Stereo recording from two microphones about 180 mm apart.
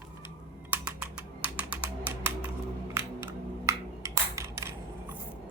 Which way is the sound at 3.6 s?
15° right (ahead or behind).